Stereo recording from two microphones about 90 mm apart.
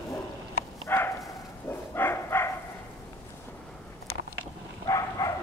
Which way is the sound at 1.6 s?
25° left (ahead or behind).